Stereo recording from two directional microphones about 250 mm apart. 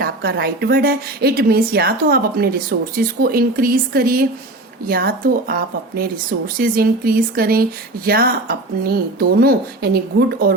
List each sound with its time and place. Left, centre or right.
0.0 s a woman's voice: right